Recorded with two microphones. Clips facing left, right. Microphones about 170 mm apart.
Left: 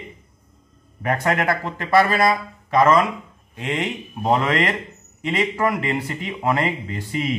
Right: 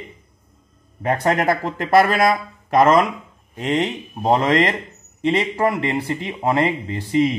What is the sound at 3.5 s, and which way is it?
Speech, 35° right (ahead or behind).